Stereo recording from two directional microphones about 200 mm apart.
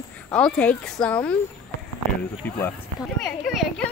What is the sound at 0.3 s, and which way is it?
Speech, 5° left (ahead or behind).